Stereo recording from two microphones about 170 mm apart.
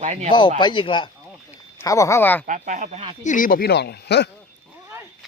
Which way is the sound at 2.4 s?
50° right (ahead or behind).